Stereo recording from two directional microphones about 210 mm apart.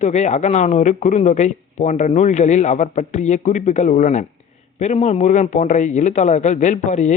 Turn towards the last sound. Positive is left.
turn(degrees=35)  # may be behind; listen again after turning